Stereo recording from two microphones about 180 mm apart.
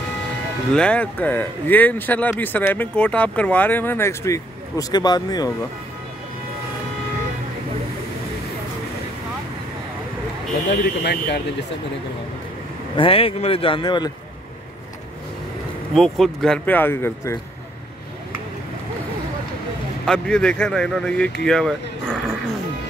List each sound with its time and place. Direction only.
0.7 s speech: 5° left (ahead or behind); by 5.5 s 20° left (ahead or behind)
10.7 s speech: 65° left (ahead or behind)
12.9 s speech: 30° left (ahead or behind)
15.9 s speech: centre (ahead or behind)
20.1 s speech: 5° left (ahead or behind)